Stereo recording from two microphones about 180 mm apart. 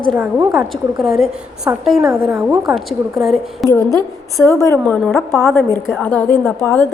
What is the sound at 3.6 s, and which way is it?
A woman's voice, 15° left (ahead or behind).